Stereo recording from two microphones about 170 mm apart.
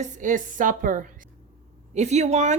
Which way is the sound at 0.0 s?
50° right (ahead or behind).